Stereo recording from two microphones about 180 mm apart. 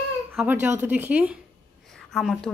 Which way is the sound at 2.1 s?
Centre (ahead or behind).